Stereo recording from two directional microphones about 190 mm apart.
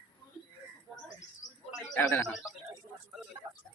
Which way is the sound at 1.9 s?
15° left (ahead or behind).